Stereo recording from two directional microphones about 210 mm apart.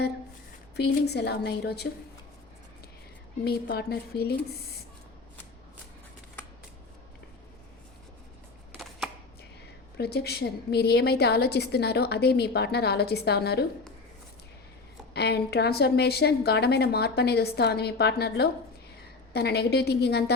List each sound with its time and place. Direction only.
0.8 s a woman's voice: 50° left (ahead or behind)
3.4 s a woman's voice: 50° left (ahead or behind)
10.0 s a woman's voice: 50° left (ahead or behind)
15.1 s a woman's voice: 50° left (ahead or behind)